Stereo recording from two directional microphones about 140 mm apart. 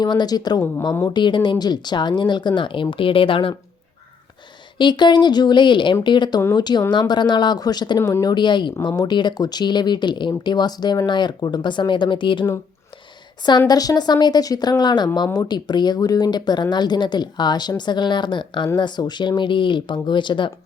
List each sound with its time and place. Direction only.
0.0 s a woman's voice: 30° left (ahead or behind)
4.8 s a woman's voice: 35° left (ahead or behind)